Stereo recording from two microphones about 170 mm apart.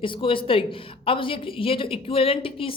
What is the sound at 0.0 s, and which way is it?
Speech, 30° left (ahead or behind).